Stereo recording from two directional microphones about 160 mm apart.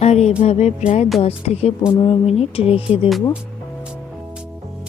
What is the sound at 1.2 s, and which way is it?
Speech, 40° left (ahead or behind).